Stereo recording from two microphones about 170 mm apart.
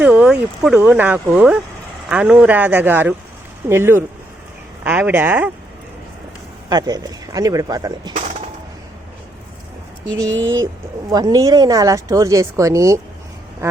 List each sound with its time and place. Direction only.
0.0 s speech: 10° right (ahead or behind)
6.7 s speech: 20° right (ahead or behind)
10.2 s speech: 90° right
11.1 s speech: 20° right (ahead or behind)